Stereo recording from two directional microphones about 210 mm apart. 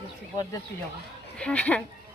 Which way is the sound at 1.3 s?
5° left (ahead or behind).